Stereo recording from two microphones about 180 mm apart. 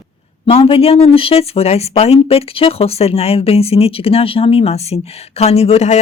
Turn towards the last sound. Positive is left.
turn(degrees=40)  # may be behind; listen again after turning